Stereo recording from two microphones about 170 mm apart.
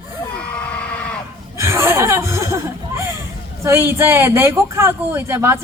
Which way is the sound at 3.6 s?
15° right (ahead or behind).